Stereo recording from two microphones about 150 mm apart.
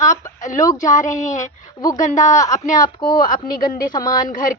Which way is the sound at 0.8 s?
55° left (ahead or behind).